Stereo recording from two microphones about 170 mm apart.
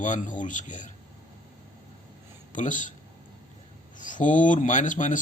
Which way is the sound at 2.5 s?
50° left (ahead or behind).